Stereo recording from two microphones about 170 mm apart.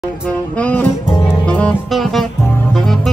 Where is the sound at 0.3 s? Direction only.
10° left (ahead or behind).